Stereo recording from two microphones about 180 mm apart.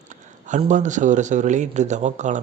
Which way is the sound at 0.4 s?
45° right (ahead or behind).